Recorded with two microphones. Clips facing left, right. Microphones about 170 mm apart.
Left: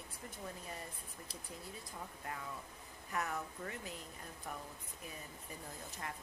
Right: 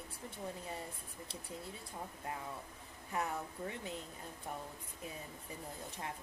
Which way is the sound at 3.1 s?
25° right (ahead or behind).